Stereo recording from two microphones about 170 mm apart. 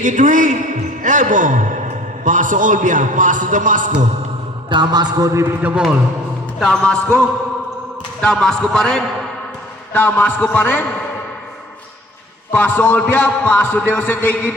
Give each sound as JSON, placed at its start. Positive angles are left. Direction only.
{"t": 0.0, "sound": "a man's voice", "side_deg": -50}
{"t": 4.7, "sound": "a man's voice", "side_deg": -25}
{"t": 6.6, "sound": "a man's voice", "side_deg": 5}
{"t": 8.2, "sound": "a man's voice", "side_deg": 5}
{"t": 12.5, "sound": "a man's voice", "side_deg": 10}